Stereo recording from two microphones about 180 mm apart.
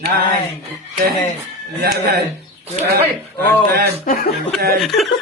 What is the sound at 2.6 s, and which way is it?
Speech, 40° right (ahead or behind).